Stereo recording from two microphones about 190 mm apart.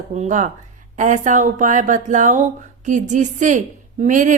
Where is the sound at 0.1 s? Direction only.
40° right (ahead or behind).